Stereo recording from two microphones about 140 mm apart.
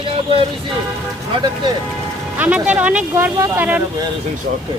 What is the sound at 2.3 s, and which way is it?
Speech, 10° right (ahead or behind).